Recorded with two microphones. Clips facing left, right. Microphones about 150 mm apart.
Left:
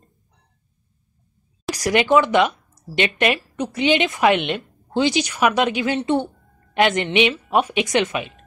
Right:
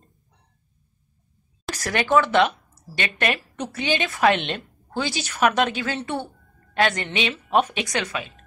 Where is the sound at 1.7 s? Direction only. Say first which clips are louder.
Left 4 dB; 15° left (ahead or behind).